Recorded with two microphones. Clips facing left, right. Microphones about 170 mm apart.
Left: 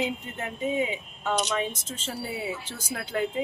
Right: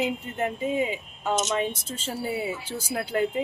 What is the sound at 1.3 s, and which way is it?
Speech, 20° right (ahead or behind).